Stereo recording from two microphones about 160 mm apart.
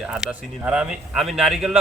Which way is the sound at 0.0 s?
5° right (ahead or behind).